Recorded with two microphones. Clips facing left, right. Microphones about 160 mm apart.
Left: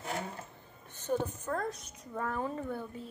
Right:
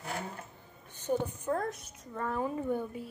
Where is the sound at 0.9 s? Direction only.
15° right (ahead or behind).